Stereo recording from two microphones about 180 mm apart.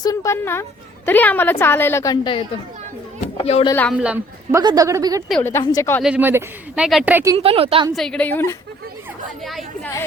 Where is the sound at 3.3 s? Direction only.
35° left (ahead or behind).